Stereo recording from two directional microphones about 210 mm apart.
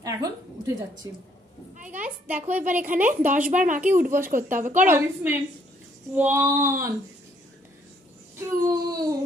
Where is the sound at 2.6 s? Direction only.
40° right (ahead or behind).